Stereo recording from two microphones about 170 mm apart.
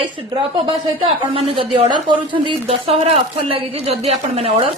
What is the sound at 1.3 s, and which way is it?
A woman's voice, 35° right (ahead or behind).